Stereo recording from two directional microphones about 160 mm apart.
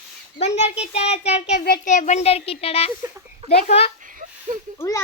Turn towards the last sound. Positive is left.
turn(degrees=20)  # may be behind; listen again after turning